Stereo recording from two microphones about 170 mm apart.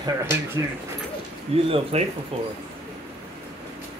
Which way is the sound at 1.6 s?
35° right (ahead or behind).